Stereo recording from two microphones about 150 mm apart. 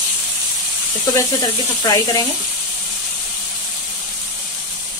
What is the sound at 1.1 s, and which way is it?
Speech, 25° left (ahead or behind).